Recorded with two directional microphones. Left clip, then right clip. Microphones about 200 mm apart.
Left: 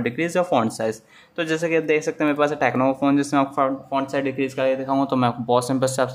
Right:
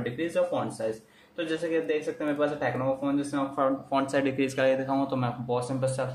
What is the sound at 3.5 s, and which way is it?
Speech, 15° left (ahead or behind).